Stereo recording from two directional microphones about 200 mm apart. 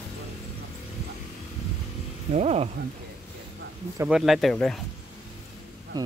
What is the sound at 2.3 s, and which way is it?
Speech, 30° right (ahead or behind).